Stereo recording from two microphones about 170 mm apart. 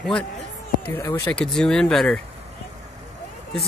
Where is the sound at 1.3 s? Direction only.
5° left (ahead or behind).